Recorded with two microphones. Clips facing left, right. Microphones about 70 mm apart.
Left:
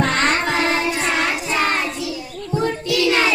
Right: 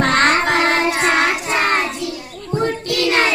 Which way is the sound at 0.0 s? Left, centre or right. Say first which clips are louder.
Right 4 dB; right.